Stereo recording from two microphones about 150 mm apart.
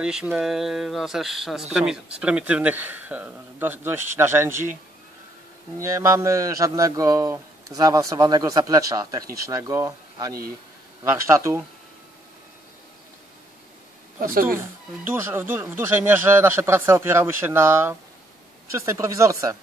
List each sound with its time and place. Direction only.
0.0 s speech: 5° right (ahead or behind)
5.8 s speech: 20° right (ahead or behind)
14.2 s speech: 70° right (ahead or behind)
15.0 s speech: 15° right (ahead or behind)